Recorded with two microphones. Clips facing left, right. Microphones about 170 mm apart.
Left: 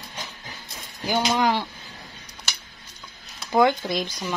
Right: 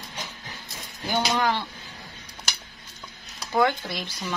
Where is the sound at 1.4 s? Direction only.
10° left (ahead or behind).